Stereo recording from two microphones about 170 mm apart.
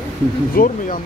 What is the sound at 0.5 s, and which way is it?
Speech, 50° left (ahead or behind).